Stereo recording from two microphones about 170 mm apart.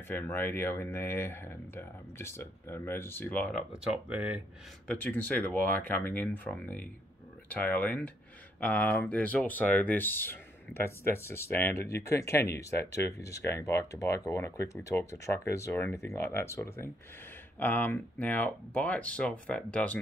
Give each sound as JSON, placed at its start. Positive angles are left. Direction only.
{"t": 0.1, "sound": "speech", "side_deg": 15}
{"t": 3.8, "sound": "speech", "side_deg": -5}
{"t": 4.8, "sound": "speech", "side_deg": 10}